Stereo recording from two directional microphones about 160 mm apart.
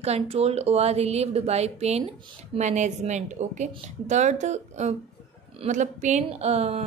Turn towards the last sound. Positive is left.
turn(degrees=-40)  # may be behind; listen again after turning